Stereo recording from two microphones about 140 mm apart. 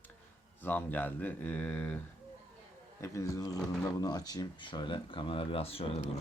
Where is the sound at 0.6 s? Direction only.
15° left (ahead or behind).